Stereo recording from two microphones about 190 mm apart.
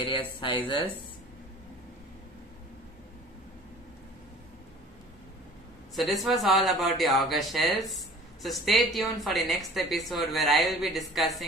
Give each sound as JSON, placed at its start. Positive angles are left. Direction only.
{"t": 0.0, "sound": "speech", "side_deg": 25}
{"t": 5.9, "sound": "a woman's voice", "side_deg": 0}